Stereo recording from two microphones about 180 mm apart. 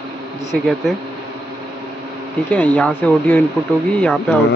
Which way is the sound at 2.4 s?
10° left (ahead or behind).